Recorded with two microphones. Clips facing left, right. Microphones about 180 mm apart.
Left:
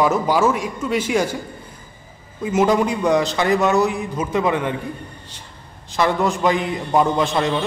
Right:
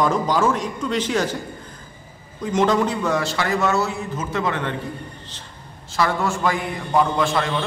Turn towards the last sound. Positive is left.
turn(degrees=20)  # may be behind; listen again after turning